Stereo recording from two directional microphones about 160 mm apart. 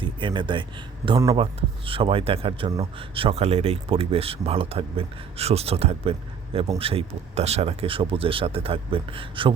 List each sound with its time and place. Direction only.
0.0 s speech: 30° right (ahead or behind)